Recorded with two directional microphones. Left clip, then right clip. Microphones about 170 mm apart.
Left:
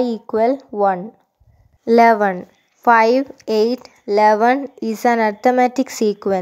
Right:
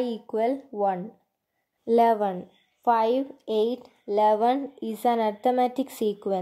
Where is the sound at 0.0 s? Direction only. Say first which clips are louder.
Left 9 dB; 25° left (ahead or behind).